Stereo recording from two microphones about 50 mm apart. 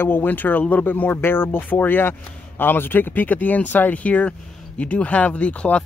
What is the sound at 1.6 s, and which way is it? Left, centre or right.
Speech, left.